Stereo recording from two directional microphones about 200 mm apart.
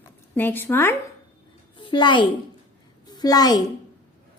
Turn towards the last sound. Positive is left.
turn(degrees=20)  # may be behind; listen again after turning